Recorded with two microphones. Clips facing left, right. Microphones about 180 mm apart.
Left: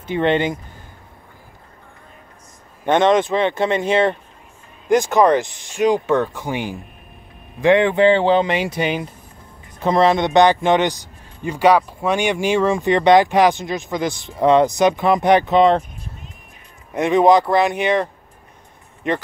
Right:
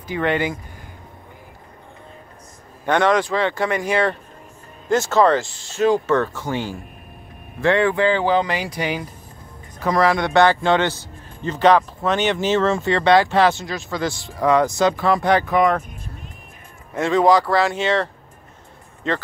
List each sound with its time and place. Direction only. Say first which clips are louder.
0.0 s speech: left 3 dB; 25° left (ahead or behind)
2.8 s a man's voice: left 3 dB; 20° left (ahead or behind)
16.9 s a man's voice: left 2 dB; 20° left (ahead or behind)